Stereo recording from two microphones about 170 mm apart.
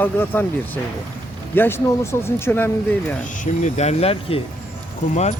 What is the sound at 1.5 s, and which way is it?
Speech, 15° left (ahead or behind).